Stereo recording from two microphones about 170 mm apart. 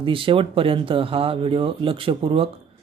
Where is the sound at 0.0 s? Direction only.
30° right (ahead or behind).